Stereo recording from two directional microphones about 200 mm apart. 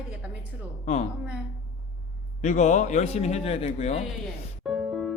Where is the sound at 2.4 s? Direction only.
35° left (ahead or behind).